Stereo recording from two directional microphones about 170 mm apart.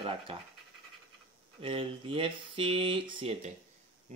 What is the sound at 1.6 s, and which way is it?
Speech, 30° right (ahead or behind).